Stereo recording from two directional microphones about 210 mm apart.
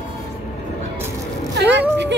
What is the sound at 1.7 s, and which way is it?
Speech, 55° right (ahead or behind).